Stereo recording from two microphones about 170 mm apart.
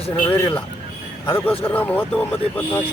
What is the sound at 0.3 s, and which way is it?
Speech, 15° left (ahead or behind).